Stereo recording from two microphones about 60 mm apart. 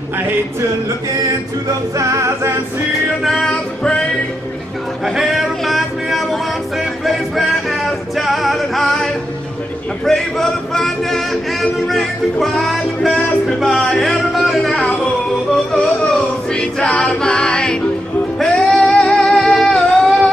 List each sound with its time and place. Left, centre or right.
2.0 s a capella: right
3.3 s music: centre
5.0 s a sound: centre
7.1 s music: centre
10.0 s speech: centre
11.9 s music: centre
14.7 s speech: centre
15.5 s music: centre